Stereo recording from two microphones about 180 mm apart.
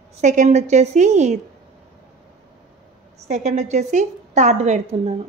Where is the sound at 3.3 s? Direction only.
40° right (ahead or behind).